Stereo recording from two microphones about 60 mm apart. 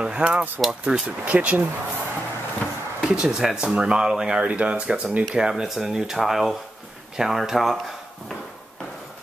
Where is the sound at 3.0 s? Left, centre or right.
Centre.